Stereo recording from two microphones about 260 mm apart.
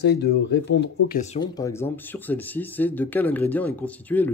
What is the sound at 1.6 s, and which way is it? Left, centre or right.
Speech, centre.